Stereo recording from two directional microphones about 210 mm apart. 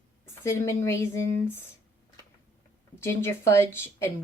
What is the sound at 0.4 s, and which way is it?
Speech, 10° left (ahead or behind).